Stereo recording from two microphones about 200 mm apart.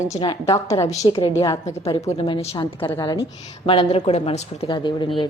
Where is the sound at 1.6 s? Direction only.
30° left (ahead or behind).